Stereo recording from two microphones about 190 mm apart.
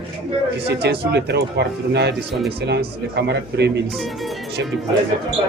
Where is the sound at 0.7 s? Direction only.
60° right (ahead or behind).